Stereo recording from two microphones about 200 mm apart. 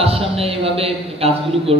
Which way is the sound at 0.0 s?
30° right (ahead or behind).